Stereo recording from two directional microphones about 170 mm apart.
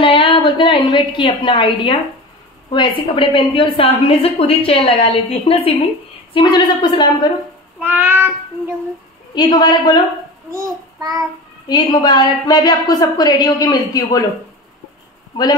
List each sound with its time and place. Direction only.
0.0 s a woman's voice: 30° left (ahead or behind)
7.8 s child singing: 10° right (ahead or behind)
9.3 s a woman's voice: 25° left (ahead or behind)
10.5 s child singing: 20° right (ahead or behind)
11.6 s a woman's voice: 25° left (ahead or behind)